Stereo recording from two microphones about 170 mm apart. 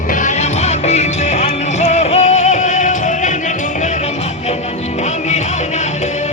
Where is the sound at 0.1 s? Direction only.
45° left (ahead or behind).